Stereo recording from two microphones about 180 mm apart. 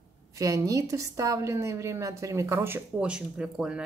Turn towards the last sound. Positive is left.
turn(degrees=-5)  # may be behind; listen again after turning